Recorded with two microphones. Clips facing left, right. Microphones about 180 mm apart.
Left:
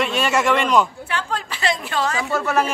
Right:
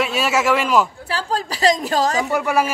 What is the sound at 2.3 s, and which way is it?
Speech, 15° right (ahead or behind).